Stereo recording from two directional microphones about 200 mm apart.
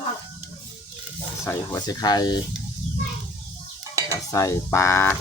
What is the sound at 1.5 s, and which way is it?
Speech, 15° left (ahead or behind).